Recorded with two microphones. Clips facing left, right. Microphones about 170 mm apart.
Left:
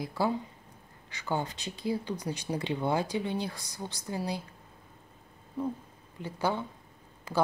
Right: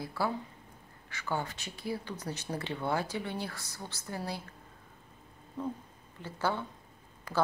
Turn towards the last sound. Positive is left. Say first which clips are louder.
# left 2 dB
turn(degrees=25)  # may be behind; listen again after turning